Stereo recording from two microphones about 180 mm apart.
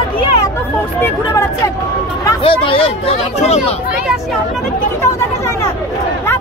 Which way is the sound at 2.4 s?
30° left (ahead or behind).